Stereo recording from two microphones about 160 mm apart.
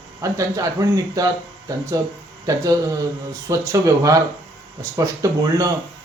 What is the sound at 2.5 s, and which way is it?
A man's voice, 20° right (ahead or behind).